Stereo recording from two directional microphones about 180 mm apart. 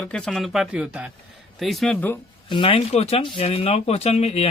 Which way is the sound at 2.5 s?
30° left (ahead or behind).